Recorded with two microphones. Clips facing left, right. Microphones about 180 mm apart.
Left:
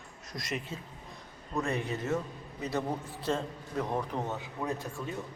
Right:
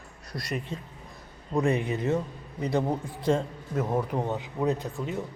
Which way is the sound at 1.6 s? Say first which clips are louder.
Right 7 dB; 15° right (ahead or behind).